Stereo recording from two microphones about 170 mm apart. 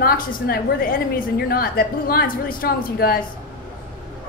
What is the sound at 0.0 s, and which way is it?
A woman's voice, 60° left (ahead or behind).